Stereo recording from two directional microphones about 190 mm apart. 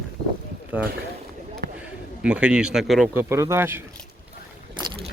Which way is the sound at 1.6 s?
55° right (ahead or behind).